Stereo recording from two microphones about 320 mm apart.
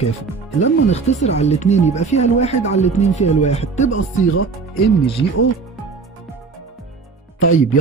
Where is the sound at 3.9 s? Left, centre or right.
Left.